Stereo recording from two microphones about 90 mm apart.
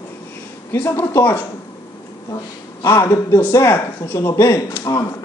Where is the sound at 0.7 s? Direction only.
30° left (ahead or behind).